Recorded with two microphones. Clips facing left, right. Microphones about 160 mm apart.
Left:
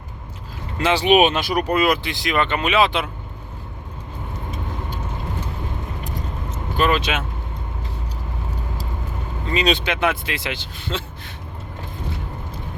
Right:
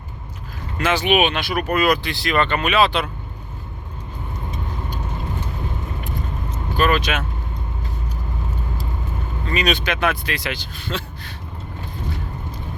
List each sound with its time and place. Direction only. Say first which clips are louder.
0.8 s speech: left 3 dB; 30° left (ahead or behind)
1.5 s speech: right 2 dB; 25° left (ahead or behind)
6.7 s speech: even; 20° left (ahead or behind)
9.5 s speech: left 1 dB; 30° left (ahead or behind)